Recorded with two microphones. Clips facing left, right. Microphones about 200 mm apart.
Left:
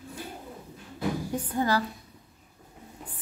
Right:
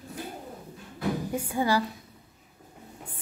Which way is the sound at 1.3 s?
10° right (ahead or behind).